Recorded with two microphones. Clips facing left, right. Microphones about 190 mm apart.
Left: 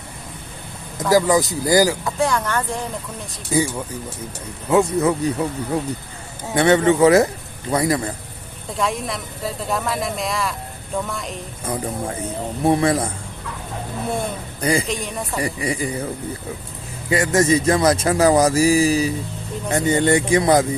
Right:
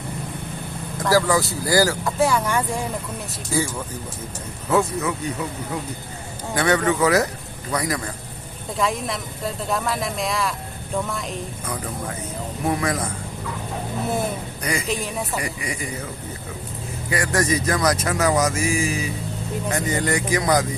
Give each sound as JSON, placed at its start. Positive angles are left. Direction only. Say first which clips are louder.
{"t": 1.1, "sound": "speech", "louder": "left 3 dB", "side_deg": 20}
{"t": 2.0, "sound": "speech", "louder": "right 1 dB", "side_deg": -5}
{"t": 3.5, "sound": "speech", "louder": "left 4 dB", "side_deg": 20}
{"t": 4.9, "sound": "speech", "louder": "left 7 dB", "side_deg": 35}
{"t": 8.8, "sound": "speech", "louder": "even", "side_deg": 0}
{"t": 11.6, "sound": "speech", "louder": "left 9 dB", "side_deg": 30}
{"t": 14.6, "sound": "a woman's voice", "louder": "left 8 dB", "side_deg": 30}
{"t": 14.8, "sound": "speech", "louder": "even", "side_deg": 0}
{"t": 15.4, "sound": "speech", "louder": "left 6 dB", "side_deg": 30}
{"t": 17.1, "sound": "speech", "louder": "left 5 dB", "side_deg": 25}